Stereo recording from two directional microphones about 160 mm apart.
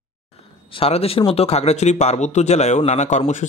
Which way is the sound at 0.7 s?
35° left (ahead or behind).